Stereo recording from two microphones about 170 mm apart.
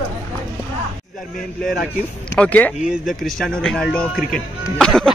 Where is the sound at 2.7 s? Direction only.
5° right (ahead or behind).